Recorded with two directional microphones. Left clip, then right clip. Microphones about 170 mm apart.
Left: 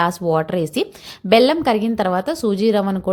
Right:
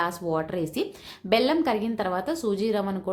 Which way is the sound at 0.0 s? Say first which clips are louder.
Left 9 dB; 45° left (ahead or behind).